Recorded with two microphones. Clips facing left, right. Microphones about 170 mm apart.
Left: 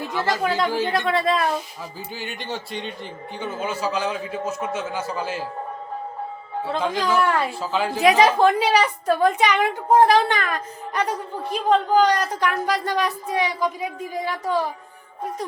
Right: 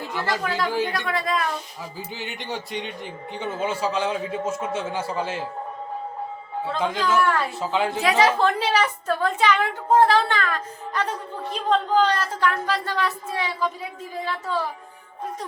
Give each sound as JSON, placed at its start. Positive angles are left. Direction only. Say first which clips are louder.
{"t": 0.3, "sound": "speech", "louder": "left 3 dB", "side_deg": 20}
{"t": 2.1, "sound": "speech", "louder": "left 1 dB", "side_deg": -20}
{"t": 3.4, "sound": "a man's voice", "louder": "right 1 dB", "side_deg": -25}
{"t": 6.7, "sound": "a woman's voice", "louder": "left 1 dB", "side_deg": 20}
{"t": 7.6, "sound": "a man's voice", "louder": "even", "side_deg": -20}
{"t": 8.0, "sound": "a woman's voice", "louder": "left 5 dB", "side_deg": 15}